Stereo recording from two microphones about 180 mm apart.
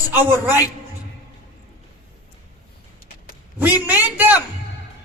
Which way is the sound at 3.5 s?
10° right (ahead or behind).